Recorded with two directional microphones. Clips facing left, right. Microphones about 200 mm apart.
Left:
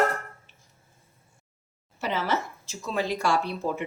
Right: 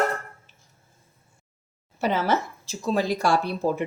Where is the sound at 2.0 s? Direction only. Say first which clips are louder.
Right 4 dB; 45° right (ahead or behind).